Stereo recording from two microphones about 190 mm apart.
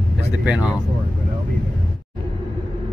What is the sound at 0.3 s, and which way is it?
Speech, 5° right (ahead or behind).